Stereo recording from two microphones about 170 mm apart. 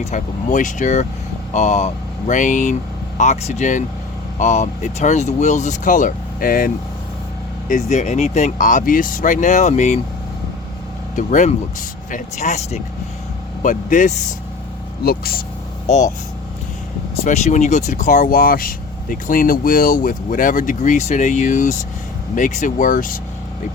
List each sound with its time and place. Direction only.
0.0 s speech: 45° left (ahead or behind)
7.7 s speech: 40° left (ahead or behind)
11.1 s speech: 50° left (ahead or behind)
15.0 s speech: 65° left (ahead or behind)
15.9 s speech: 45° left (ahead or behind)
17.2 s speech: 45° left (ahead or behind)